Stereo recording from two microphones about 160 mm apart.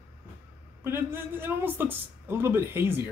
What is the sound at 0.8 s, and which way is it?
A man's voice, 15° right (ahead or behind).